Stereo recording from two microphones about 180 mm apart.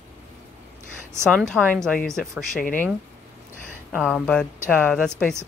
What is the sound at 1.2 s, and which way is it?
Speech, 5° left (ahead or behind).